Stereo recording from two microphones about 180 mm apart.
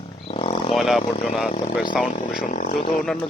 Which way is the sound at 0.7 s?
Centre (ahead or behind).